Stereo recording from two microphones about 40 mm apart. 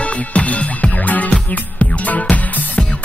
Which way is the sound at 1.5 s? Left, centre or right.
Left.